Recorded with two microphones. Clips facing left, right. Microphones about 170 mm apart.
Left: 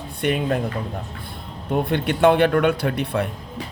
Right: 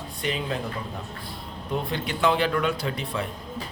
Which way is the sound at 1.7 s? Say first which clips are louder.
Left 7 dB; 60° left (ahead or behind).